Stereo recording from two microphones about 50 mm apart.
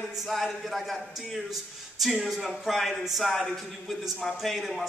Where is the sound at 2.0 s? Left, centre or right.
Centre.